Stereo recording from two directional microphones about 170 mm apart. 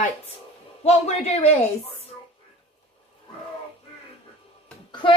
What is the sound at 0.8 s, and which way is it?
Speech, 40° left (ahead or behind).